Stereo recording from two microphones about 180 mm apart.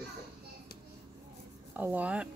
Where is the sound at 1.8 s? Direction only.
10° right (ahead or behind).